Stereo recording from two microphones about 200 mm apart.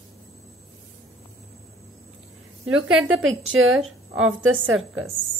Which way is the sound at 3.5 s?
90° right.